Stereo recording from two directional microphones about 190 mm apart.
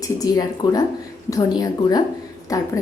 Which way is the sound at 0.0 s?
20° left (ahead or behind).